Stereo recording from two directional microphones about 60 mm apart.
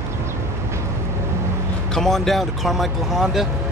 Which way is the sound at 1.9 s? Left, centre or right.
Centre.